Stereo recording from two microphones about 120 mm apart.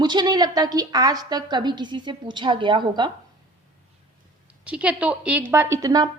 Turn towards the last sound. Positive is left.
turn(degrees=-30)  # may be behind; listen again after turning